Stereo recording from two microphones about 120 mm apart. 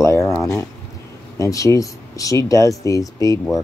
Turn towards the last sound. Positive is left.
turn(degrees=30)  # may be behind; listen again after turning